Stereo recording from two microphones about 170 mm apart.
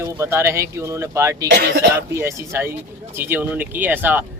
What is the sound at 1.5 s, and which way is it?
Speech, 65° right (ahead or behind).